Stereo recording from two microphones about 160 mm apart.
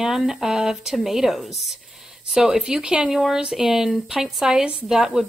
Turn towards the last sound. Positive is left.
turn(degrees=-5)  # may be behind; listen again after turning